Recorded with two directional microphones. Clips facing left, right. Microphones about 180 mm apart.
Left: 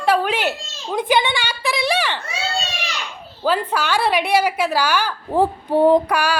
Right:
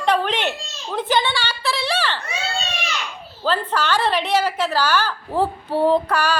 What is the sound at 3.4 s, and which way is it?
A woman's voice, 10° left (ahead or behind).